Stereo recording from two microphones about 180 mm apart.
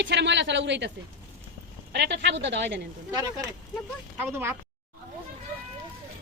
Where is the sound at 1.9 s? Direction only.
70° right (ahead or behind).